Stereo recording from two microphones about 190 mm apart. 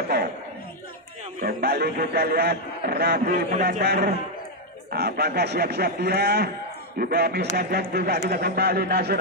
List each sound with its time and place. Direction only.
1.4 s a man's voice: 55° right (ahead or behind)
3.8 s a man's voice: 60° right (ahead or behind)